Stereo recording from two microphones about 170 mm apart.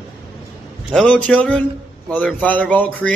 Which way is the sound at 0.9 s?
5° left (ahead or behind).